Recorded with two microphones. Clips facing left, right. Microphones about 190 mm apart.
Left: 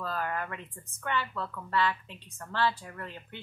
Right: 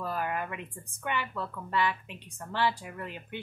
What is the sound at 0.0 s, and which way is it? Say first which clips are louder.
A woman's voice: right 1 dB; 15° right (ahead or behind).